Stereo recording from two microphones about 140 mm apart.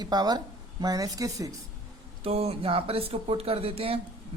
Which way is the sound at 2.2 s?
45° right (ahead or behind).